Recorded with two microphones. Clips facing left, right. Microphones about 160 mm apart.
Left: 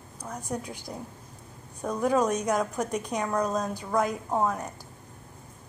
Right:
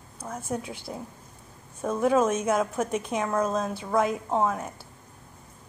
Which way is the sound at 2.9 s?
40° left (ahead or behind).